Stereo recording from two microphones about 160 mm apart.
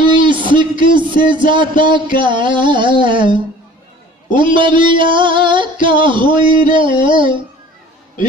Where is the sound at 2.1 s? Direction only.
30° right (ahead or behind).